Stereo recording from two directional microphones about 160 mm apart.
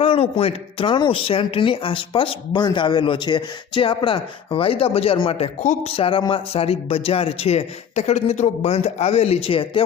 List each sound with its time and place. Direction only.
0.0 s speech: 35° left (ahead or behind)